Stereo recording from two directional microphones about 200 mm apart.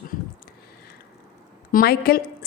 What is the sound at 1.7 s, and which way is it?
Speech, 45° left (ahead or behind).